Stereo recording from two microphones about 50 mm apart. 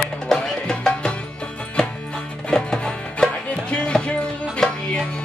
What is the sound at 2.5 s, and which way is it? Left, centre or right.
Music, centre.